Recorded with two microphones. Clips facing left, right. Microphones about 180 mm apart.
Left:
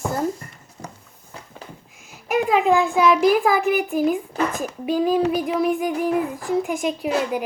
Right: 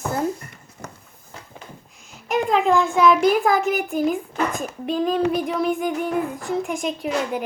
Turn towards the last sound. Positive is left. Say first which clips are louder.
# left 2 dB
turn(degrees=5)  # may be behind; listen again after turning